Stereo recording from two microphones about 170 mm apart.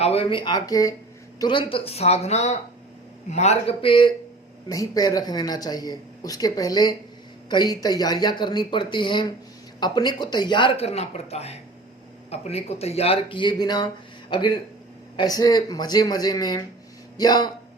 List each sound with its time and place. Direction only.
0.0 s speech: 35° left (ahead or behind)